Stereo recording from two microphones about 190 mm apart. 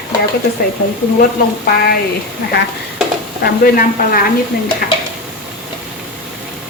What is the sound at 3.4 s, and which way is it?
Speech, 50° left (ahead or behind).